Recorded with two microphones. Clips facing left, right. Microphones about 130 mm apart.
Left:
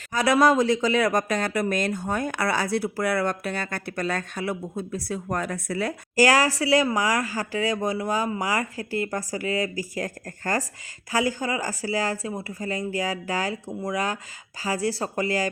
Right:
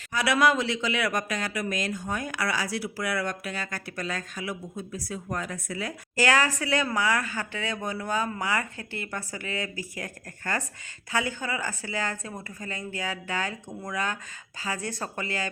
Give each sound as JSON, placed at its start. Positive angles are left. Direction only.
{"t": 0.1, "sound": "speech", "side_deg": 45}
{"t": 6.2, "sound": "speech", "side_deg": 35}